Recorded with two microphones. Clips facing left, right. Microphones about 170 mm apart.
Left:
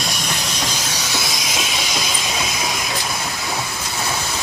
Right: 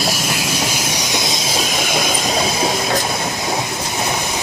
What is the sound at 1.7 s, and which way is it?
Train, 50° right (ahead or behind).